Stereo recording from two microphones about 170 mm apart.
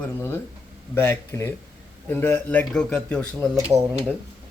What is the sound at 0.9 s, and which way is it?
A man's voice, 15° left (ahead or behind).